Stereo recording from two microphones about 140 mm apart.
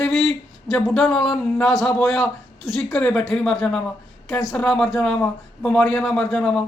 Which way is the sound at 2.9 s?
10° left (ahead or behind).